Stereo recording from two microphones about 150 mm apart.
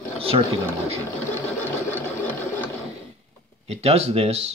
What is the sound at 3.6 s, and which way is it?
Speech, 45° right (ahead or behind).